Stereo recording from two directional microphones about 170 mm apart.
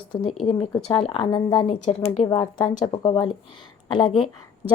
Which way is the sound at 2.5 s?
25° left (ahead or behind).